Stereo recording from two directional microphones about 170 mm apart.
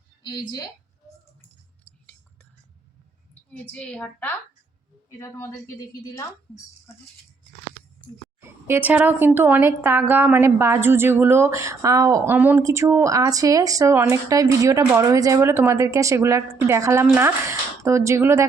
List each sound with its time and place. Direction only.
0.2 s a woman's voice: 25° left (ahead or behind)
3.5 s a woman's voice: 10° left (ahead or behind)
8.4 s a woman's voice: 15° right (ahead or behind)